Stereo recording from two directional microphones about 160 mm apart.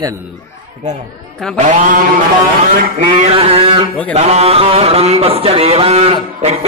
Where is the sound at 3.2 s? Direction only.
40° right (ahead or behind).